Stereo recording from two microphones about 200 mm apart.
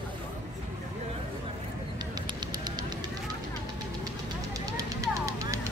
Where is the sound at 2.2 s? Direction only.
20° right (ahead or behind).